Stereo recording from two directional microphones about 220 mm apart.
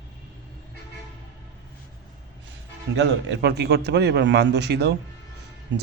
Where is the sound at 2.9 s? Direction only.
55° right (ahead or behind).